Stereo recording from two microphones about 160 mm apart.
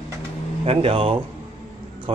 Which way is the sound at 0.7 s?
35° right (ahead or behind).